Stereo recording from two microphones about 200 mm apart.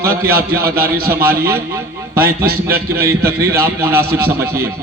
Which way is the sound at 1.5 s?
10° right (ahead or behind).